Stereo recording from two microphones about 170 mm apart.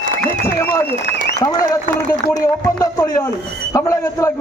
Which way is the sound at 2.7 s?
20° left (ahead or behind).